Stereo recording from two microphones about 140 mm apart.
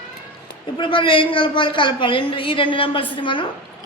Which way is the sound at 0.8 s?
35° left (ahead or behind).